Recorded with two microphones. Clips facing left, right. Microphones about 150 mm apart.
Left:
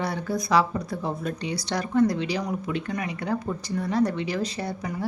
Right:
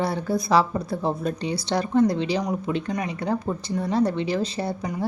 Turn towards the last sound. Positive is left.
turn(degrees=-25)  # may be behind; listen again after turning